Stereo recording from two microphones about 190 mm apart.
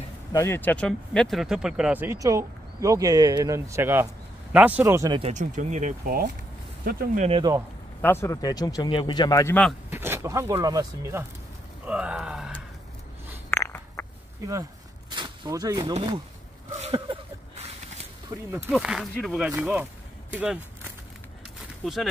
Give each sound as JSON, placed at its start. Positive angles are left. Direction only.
{"t": 0.3, "sound": "speech", "side_deg": 15}
{"t": 5.2, "sound": "speech", "side_deg": -40}
{"t": 7.2, "sound": "speech", "side_deg": -30}
{"t": 8.0, "sound": "speech", "side_deg": 15}
{"t": 9.8, "sound": "speech", "side_deg": -10}
{"t": 11.8, "sound": "speech", "side_deg": -5}
{"t": 13.5, "sound": "a sound", "side_deg": 10}
{"t": 14.5, "sound": "a sound", "side_deg": -20}
{"t": 15.8, "sound": "speech", "side_deg": -30}
{"t": 16.7, "sound": "a sound", "side_deg": -30}
{"t": 18.3, "sound": "speech", "side_deg": -10}
{"t": 21.8, "sound": "speech", "side_deg": 0}